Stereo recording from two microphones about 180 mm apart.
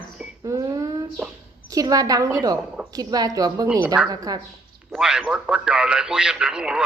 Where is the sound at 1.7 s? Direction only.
20° right (ahead or behind).